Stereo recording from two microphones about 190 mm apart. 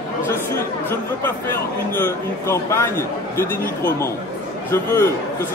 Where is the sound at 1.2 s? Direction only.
10° left (ahead or behind).